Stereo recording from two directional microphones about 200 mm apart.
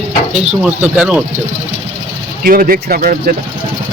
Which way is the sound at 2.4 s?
45° right (ahead or behind).